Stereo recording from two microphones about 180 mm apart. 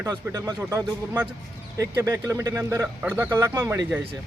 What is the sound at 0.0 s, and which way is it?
Speech, 15° right (ahead or behind).